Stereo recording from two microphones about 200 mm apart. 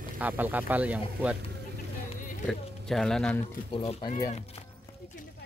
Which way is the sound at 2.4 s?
Centre (ahead or behind).